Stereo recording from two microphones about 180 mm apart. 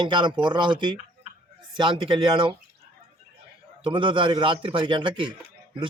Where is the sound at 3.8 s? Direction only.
25° right (ahead or behind).